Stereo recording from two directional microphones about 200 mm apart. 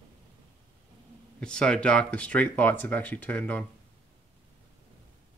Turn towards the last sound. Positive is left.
turn(degrees=5)  # may be behind; listen again after turning